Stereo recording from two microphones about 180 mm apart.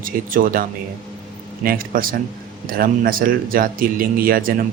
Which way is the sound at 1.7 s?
50° right (ahead or behind).